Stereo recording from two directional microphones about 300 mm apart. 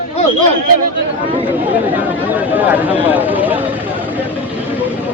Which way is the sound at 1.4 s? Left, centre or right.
Centre.